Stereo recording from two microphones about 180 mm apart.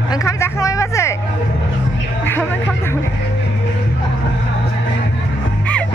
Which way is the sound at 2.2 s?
10° left (ahead or behind).